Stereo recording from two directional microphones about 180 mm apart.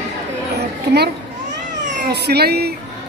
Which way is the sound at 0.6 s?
65° right (ahead or behind).